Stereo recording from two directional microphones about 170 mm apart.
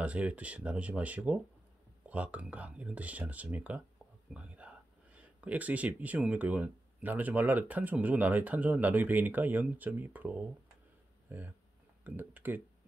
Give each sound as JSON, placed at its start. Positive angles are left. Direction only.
{"t": 0.0, "sound": "speech", "side_deg": -10}